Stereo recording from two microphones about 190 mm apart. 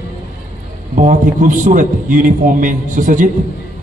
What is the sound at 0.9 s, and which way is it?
A man's voice, 40° right (ahead or behind).